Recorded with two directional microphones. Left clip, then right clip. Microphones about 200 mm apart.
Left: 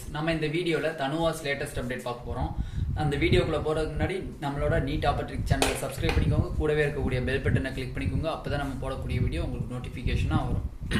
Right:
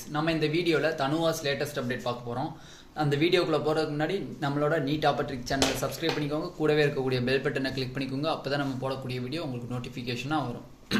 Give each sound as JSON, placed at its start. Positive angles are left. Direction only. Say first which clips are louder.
{"t": 0.1, "sound": "speech", "louder": "right 1 dB", "side_deg": -40}